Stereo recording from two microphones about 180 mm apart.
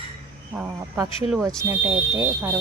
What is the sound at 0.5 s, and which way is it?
Speech, 10° right (ahead or behind).